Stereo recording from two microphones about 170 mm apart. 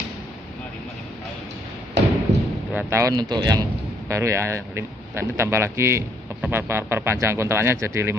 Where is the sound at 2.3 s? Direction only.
40° right (ahead or behind).